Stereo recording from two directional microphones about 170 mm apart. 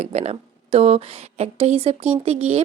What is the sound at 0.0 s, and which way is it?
A woman's voice, 40° right (ahead or behind).